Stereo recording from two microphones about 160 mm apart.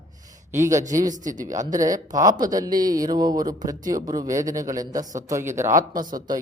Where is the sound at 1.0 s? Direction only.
55° right (ahead or behind).